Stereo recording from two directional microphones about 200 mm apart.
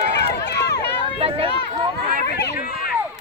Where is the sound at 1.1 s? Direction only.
30° right (ahead or behind).